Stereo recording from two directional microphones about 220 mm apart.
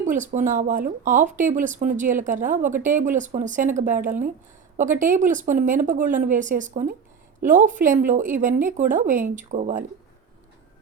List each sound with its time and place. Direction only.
0.0 s speech: 35° right (ahead or behind)